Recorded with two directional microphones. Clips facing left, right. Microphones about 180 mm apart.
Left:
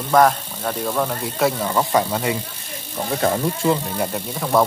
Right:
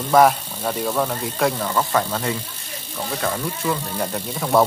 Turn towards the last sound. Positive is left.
turn(degrees=0)  # may be behind; listen again after turning